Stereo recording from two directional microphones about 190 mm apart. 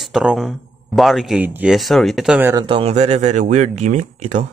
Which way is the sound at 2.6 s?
30° right (ahead or behind).